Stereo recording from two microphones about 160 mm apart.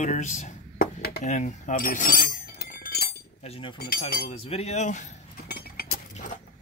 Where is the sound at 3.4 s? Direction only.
35° left (ahead or behind).